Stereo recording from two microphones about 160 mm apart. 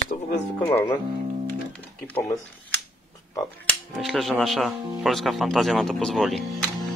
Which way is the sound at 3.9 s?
Centre (ahead or behind).